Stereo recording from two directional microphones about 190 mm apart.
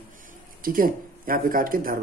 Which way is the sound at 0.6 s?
50° right (ahead or behind).